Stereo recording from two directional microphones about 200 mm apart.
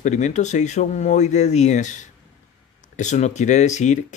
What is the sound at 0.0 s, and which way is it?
Speech, 35° left (ahead or behind).